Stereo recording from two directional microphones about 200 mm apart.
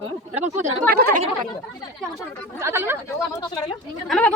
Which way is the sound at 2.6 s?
10° right (ahead or behind).